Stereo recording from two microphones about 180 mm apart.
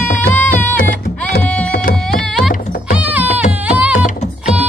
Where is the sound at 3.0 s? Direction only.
10° right (ahead or behind).